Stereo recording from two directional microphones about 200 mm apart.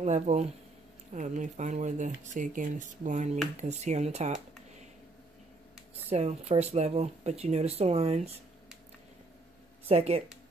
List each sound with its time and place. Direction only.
0.0 s speech: 35° right (ahead or behind)
6.0 s speech: 30° right (ahead or behind)
9.8 s speech: 30° right (ahead or behind)